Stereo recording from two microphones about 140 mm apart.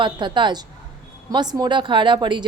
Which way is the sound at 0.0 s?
35° right (ahead or behind).